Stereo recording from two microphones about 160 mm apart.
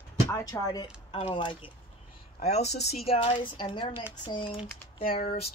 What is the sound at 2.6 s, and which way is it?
Speech, 90° left.